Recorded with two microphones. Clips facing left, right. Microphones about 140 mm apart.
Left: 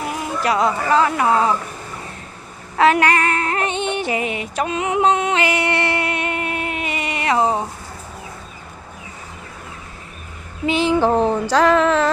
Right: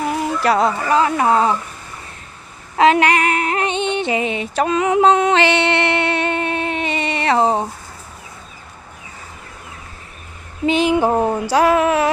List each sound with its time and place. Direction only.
0.4 s speech: 35° right (ahead or behind)
0.9 s female singing: 20° right (ahead or behind)
2.7 s female singing: 20° right (ahead or behind); by 5.4 s 40° right (ahead or behind)
5.4 s music: 30° right (ahead or behind)
10.7 s a sound: 20° right (ahead or behind)